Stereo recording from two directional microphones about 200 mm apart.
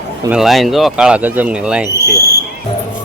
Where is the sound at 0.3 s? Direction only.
Centre (ahead or behind).